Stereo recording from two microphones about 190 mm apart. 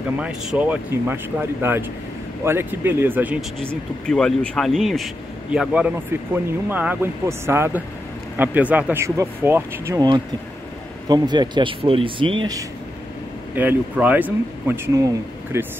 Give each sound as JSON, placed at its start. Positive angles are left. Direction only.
{"t": 0.2, "sound": "speech", "side_deg": -5}
{"t": 13.6, "sound": "speech", "side_deg": -10}